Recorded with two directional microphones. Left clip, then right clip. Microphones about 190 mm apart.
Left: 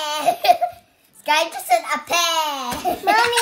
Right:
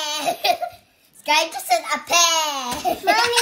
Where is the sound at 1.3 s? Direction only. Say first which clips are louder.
Left 1 dB; 10° left (ahead or behind).